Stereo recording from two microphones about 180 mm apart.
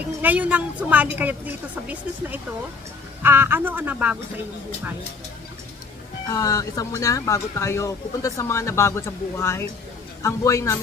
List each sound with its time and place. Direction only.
0.2 s a woman's voice: 10° right (ahead or behind)
6.2 s speech: 20° left (ahead or behind)